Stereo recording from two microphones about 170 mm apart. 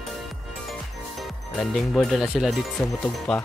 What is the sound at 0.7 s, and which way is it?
Music, centre (ahead or behind).